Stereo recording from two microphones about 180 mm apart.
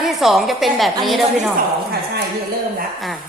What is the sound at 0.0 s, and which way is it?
A woman's voice, centre (ahead or behind).